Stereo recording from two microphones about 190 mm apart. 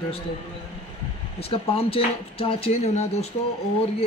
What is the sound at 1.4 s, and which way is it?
Speech, 30° left (ahead or behind).